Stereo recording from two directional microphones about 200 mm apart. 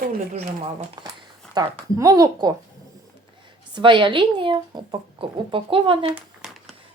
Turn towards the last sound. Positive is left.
turn(degrees=-5)  # may be behind; listen again after turning